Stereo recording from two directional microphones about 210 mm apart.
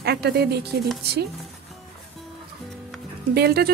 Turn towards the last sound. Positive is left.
turn(degrees=-50)  # may be behind; listen again after turning